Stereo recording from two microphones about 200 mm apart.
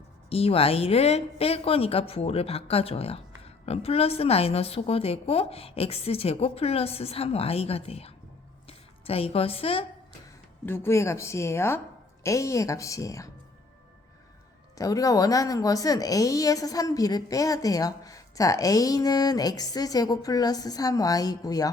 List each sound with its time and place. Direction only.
0.3 s a woman's voice: 30° left (ahead or behind)
10.7 s a woman's voice: 10° left (ahead or behind)
14.8 s a woman's voice: 15° left (ahead or behind)